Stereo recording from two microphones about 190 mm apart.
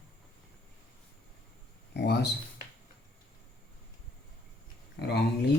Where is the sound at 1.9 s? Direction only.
60° left (ahead or behind).